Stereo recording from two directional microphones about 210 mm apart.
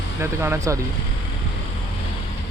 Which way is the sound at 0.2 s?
10° right (ahead or behind).